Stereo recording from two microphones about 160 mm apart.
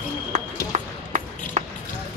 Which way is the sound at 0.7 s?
45° right (ahead or behind).